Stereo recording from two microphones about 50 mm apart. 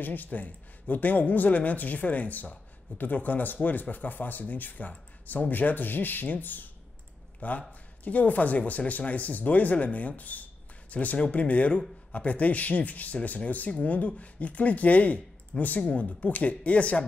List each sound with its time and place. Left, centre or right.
0.0 s speech: left